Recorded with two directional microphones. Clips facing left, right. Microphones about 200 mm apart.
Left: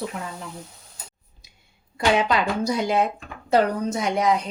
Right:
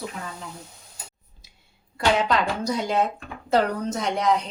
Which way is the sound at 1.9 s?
10° left (ahead or behind).